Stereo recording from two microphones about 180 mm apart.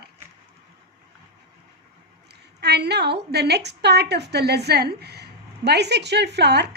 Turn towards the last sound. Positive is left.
turn(degrees=-70)  # may be behind; listen again after turning